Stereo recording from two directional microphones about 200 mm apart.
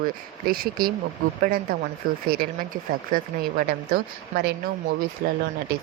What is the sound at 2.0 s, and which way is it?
Speech, 45° right (ahead or behind).